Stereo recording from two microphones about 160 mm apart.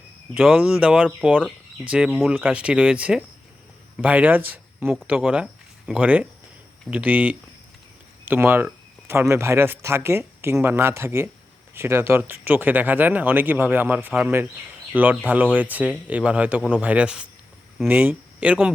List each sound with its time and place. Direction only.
0.3 s speech: 5° right (ahead or behind)
2.0 s speech: 5° left (ahead or behind)
2.3 s speech: 10° right (ahead or behind)